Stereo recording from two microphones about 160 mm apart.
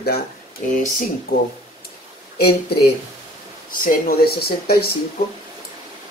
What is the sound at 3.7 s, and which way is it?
Speech, 65° left (ahead or behind).